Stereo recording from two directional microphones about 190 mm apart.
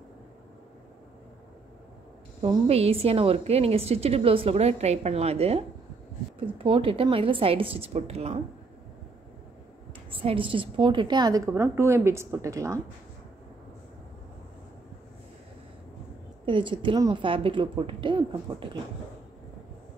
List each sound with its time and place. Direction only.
2.4 s a woman's voice: 30° right (ahead or behind)
10.1 s a woman's voice: 30° right (ahead or behind)
16.4 s a woman's voice: 25° right (ahead or behind)